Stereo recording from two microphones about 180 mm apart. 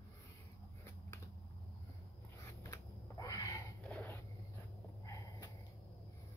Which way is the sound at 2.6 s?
20° left (ahead or behind).